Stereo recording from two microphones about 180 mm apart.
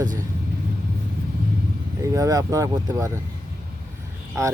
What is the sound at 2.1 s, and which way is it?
Speech, 20° right (ahead or behind).